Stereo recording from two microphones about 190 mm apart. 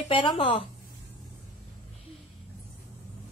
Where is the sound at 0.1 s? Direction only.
25° left (ahead or behind).